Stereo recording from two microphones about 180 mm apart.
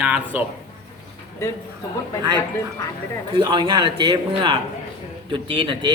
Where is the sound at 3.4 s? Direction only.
25° right (ahead or behind).